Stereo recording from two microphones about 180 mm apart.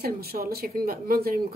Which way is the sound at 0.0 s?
55° right (ahead or behind).